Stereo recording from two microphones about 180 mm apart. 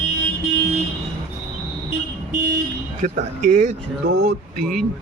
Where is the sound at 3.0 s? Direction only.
45° right (ahead or behind).